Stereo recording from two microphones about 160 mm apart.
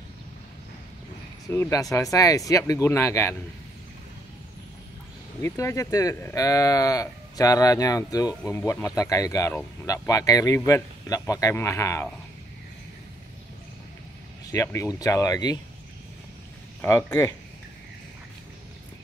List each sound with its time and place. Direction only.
1.5 s speech: 20° left (ahead or behind)
5.4 s speech: 20° left (ahead or behind)
14.5 s speech: 20° left (ahead or behind)
16.8 s speech: 15° left (ahead or behind)